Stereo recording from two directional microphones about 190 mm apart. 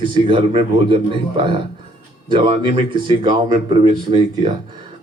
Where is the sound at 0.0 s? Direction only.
25° right (ahead or behind).